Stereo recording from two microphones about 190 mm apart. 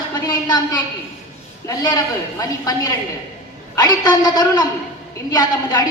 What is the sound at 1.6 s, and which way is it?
A man's voice, 20° left (ahead or behind).